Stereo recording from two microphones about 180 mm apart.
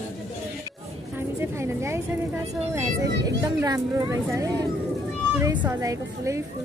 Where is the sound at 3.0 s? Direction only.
20° right (ahead or behind).